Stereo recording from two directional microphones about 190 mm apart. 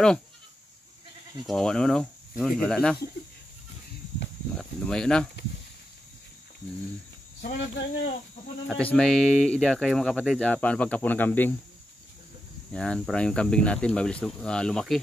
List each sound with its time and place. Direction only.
1.4 s speech: centre (ahead or behind)
4.6 s speech: 5° left (ahead or behind)
7.5 s speech: 60° left (ahead or behind)
8.6 s speech: 5° left (ahead or behind)
12.7 s speech: 5° left (ahead or behind)